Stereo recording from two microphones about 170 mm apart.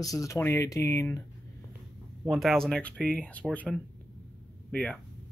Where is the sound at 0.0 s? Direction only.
20° left (ahead or behind).